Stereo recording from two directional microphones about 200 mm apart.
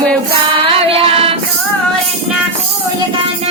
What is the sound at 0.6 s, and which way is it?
Female singing, 25° right (ahead or behind).